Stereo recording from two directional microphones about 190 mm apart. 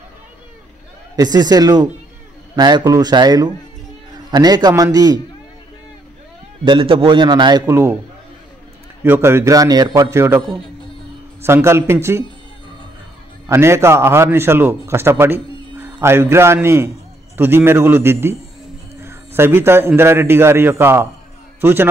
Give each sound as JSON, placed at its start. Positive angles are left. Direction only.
{"t": 1.1, "sound": "a man's voice", "side_deg": -20}
{"t": 6.6, "sound": "a man's voice", "side_deg": -25}
{"t": 9.0, "sound": "a man's voice", "side_deg": -10}
{"t": 11.4, "sound": "a man's voice", "side_deg": -15}
{"t": 13.5, "sound": "a man's voice", "side_deg": -15}